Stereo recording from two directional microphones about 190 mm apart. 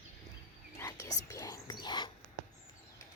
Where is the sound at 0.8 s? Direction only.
15° left (ahead or behind).